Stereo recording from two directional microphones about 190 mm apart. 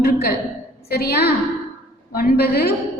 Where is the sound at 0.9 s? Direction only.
55° left (ahead or behind).